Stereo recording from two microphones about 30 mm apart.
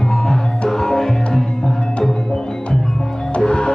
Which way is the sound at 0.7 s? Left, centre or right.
Centre.